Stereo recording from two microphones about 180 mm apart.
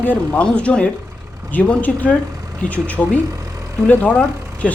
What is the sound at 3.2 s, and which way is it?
Vehicle, 20° right (ahead or behind).